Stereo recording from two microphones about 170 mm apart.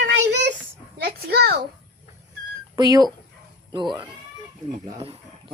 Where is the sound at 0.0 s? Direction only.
90° right; by 1.5 s 65° right (ahead or behind).